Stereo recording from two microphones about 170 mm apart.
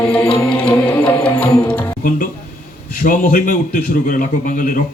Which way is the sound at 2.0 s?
55° left (ahead or behind).